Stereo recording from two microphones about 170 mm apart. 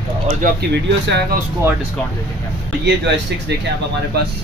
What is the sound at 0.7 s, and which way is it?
Speech, 80° right.